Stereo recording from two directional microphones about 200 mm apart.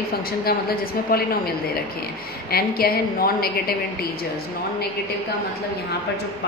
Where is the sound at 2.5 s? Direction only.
50° left (ahead or behind).